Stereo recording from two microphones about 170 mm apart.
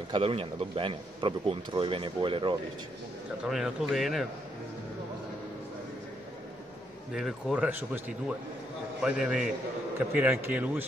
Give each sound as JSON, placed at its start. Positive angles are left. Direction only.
{"t": 0.1, "sound": "a man's voice", "side_deg": -35}
{"t": 3.4, "sound": "a man's voice", "side_deg": 0}
{"t": 7.2, "sound": "a man's voice", "side_deg": 0}
{"t": 9.0, "sound": "a man's voice", "side_deg": -5}